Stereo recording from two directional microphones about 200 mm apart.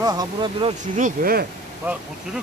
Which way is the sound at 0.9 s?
45° right (ahead or behind).